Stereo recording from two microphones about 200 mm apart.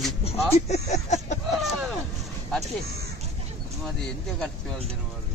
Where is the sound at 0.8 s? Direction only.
35° left (ahead or behind).